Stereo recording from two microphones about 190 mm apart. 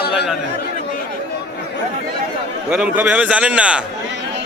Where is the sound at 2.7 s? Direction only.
5° right (ahead or behind).